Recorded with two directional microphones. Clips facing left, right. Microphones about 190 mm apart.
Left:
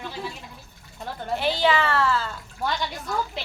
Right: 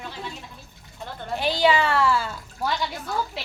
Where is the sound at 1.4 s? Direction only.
15° right (ahead or behind).